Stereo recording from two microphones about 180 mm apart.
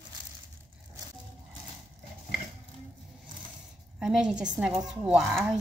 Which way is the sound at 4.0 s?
5° right (ahead or behind).